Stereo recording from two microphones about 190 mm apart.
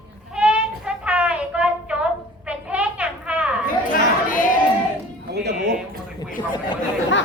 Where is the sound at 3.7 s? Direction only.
45° left (ahead or behind).